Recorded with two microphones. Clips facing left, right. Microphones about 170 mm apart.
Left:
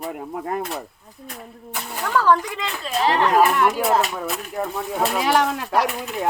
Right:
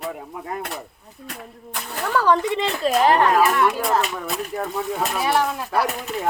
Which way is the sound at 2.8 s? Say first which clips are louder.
Right 3 dB; 45° right (ahead or behind).